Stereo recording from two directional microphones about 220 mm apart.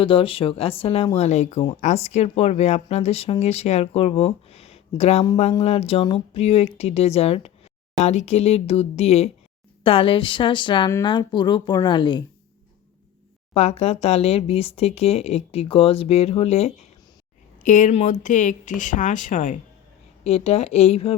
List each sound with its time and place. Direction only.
0.0 s speech: 25° left (ahead or behind)
13.5 s speech: 30° left (ahead or behind)